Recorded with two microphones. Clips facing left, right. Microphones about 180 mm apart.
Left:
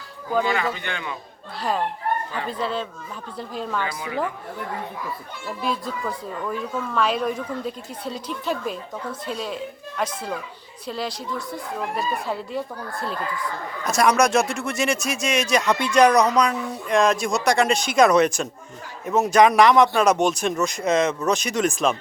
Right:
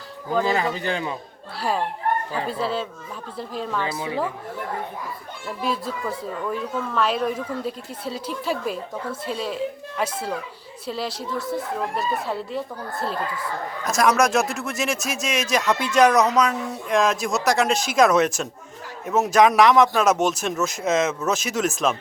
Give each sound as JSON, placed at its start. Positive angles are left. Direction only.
{"t": 0.4, "sound": "speech", "side_deg": -30}
{"t": 2.5, "sound": "a man's voice", "side_deg": -5}
{"t": 3.8, "sound": "a woman's voice", "side_deg": -25}
{"t": 5.6, "sound": "a man's voice", "side_deg": -5}
{"t": 13.8, "sound": "a man's voice", "side_deg": 0}